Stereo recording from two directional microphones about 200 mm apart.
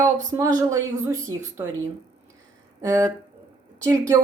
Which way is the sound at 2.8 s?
15° right (ahead or behind).